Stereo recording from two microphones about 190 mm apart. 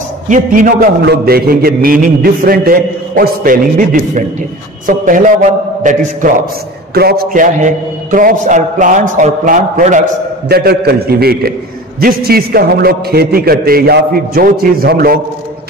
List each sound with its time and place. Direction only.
0.3 s a man's voice: 45° right (ahead or behind)
6.9 s a man's voice: 55° right (ahead or behind)
10.5 s a man's voice: 55° right (ahead or behind)